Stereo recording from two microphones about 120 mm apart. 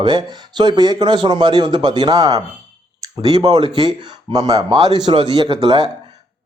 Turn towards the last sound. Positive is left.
turn(degrees=-40)  # may be behind; listen again after turning